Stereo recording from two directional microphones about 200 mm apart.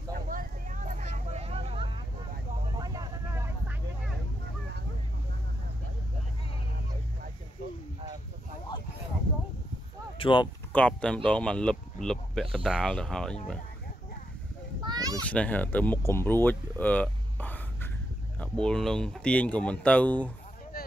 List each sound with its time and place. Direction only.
0.1 s vehicle: 45° right (ahead or behind); by 3.7 s 15° right (ahead or behind)
10.1 s speech: 25° left (ahead or behind)
10.7 s speech: 5° left (ahead or behind)
14.9 s children playing: 20° right (ahead or behind)
15.2 s speech: 5° left (ahead or behind)
20.7 s a sound: 50° left (ahead or behind)